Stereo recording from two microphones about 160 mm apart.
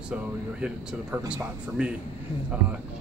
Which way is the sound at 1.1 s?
10° right (ahead or behind).